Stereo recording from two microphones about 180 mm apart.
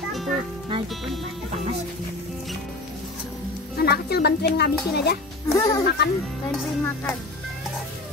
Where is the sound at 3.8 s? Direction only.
65° left (ahead or behind).